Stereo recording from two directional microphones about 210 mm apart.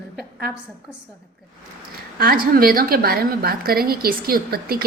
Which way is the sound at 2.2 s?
45° right (ahead or behind).